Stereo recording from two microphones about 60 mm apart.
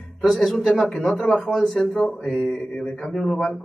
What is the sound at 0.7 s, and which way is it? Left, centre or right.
Mantra, centre.